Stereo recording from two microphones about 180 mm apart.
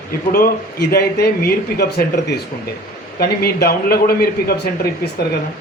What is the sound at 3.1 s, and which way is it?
Speech, 60° left (ahead or behind).